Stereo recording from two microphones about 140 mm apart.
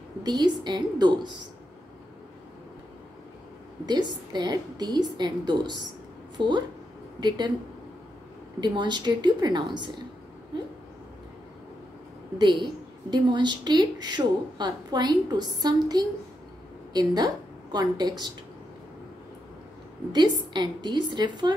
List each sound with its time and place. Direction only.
0.2 s a woman's voice: 30° right (ahead or behind)
3.8 s a woman's voice: 30° right (ahead or behind)
8.5 s a woman's voice: 30° right (ahead or behind)
13.1 s a woman's voice: 30° right (ahead or behind)
20.1 s a woman's voice: 30° right (ahead or behind)